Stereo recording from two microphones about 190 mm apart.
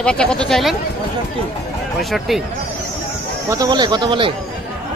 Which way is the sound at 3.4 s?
20° right (ahead or behind).